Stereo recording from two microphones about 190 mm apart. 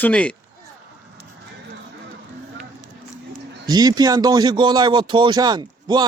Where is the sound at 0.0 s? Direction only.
5° left (ahead or behind).